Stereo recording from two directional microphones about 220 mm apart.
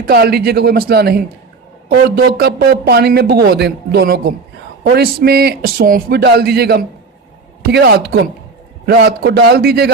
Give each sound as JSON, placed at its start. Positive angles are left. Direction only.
{"t": 0.1, "sound": "speech", "side_deg": -45}